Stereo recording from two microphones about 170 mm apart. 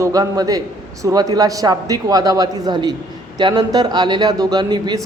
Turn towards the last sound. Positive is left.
turn(degrees=-25)  # may be behind; listen again after turning